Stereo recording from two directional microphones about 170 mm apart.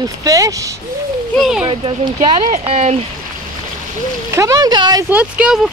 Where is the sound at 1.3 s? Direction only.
Centre (ahead or behind).